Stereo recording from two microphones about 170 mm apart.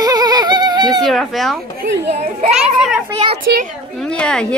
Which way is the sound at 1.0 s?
Centre (ahead or behind).